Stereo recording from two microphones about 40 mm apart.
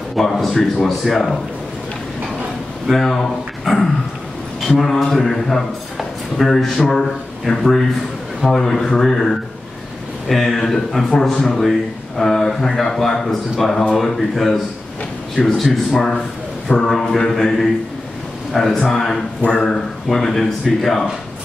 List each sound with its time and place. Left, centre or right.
0.2 s speech: centre
2.9 s speech: centre
5.9 s a sound: centre
6.9 s a man's voice: centre
16.7 s speech: centre
17.3 s speech: centre
19.4 s speech: left
19.7 s speech: centre